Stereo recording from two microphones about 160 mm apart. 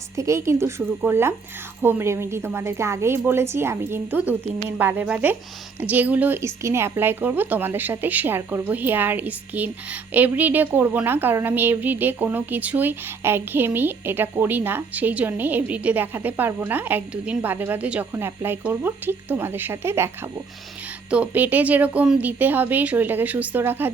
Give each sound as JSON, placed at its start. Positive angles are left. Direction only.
{"t": 0.2, "sound": "speech", "side_deg": -20}
{"t": 21.1, "sound": "speech", "side_deg": -10}